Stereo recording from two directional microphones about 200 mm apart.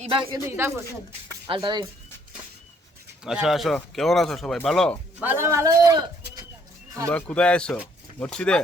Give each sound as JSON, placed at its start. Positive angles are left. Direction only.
{"t": 0.4, "sound": "a man's voice", "side_deg": -10}
{"t": 1.5, "sound": "speech", "side_deg": -25}
{"t": 3.2, "sound": "speech", "side_deg": 0}
{"t": 5.2, "sound": "a man's voice", "side_deg": -10}
{"t": 7.1, "sound": "speech", "side_deg": 5}